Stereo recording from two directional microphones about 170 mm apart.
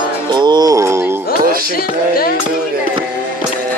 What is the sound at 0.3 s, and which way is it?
Music, 25° right (ahead or behind).